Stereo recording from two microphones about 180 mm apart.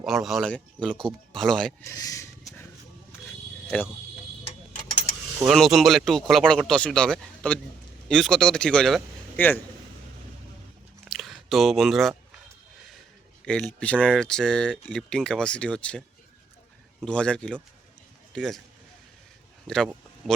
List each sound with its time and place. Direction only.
0.0 s speech: centre (ahead or behind)
1.8 s speech: 15° left (ahead or behind)
5.5 s a man's voice: centre (ahead or behind)
11.0 s a sound: centre (ahead or behind)
13.4 s speech: 5° left (ahead or behind)
19.6 s speech: 5° left (ahead or behind)